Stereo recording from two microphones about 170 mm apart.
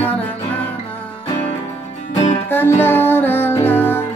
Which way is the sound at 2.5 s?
10° left (ahead or behind).